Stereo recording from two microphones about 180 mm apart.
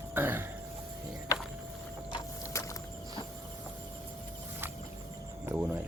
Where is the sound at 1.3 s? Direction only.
20° left (ahead or behind).